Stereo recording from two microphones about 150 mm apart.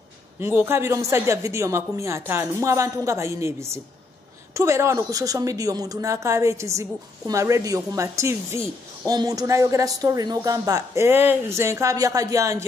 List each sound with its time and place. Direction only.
0.4 s speech: 15° right (ahead or behind)